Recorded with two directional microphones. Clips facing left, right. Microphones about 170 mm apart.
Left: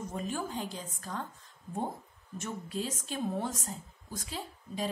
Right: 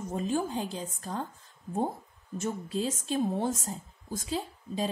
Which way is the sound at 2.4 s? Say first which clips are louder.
Right 5 dB; 30° right (ahead or behind).